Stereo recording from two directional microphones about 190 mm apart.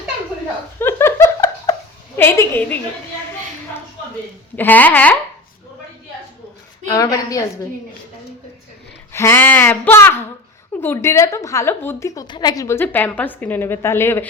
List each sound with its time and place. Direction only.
0.8 s laughter: 10° left (ahead or behind)
2.1 s a woman's voice: 10° left (ahead or behind)
4.5 s a woman's voice: 10° left (ahead or behind)
6.9 s a woman's voice: 20° left (ahead or behind)
9.1 s a woman's voice: 15° left (ahead or behind)